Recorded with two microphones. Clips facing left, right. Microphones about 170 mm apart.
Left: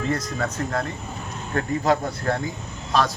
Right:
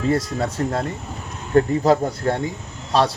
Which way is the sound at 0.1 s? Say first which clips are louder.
Right 4 dB; 30° right (ahead or behind).